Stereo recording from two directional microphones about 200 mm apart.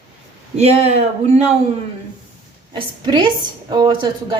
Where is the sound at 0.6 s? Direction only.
35° right (ahead or behind).